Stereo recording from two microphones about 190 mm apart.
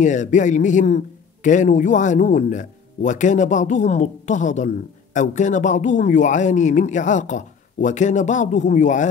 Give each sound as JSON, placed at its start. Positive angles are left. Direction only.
{"t": 0.0, "sound": "a man's voice", "side_deg": 40}